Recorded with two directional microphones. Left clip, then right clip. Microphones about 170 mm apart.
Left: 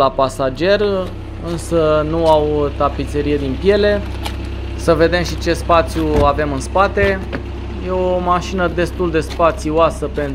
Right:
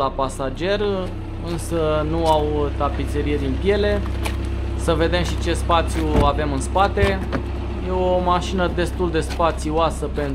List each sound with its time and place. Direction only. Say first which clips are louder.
0.0 s speech: left 8 dB; 30° left (ahead or behind)